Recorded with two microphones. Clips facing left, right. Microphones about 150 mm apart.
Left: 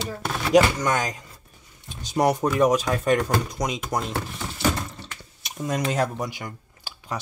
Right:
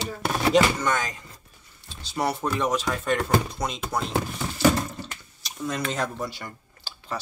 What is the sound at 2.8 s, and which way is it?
Speech, 50° left (ahead or behind).